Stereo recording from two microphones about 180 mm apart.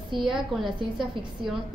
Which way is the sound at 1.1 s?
25° right (ahead or behind).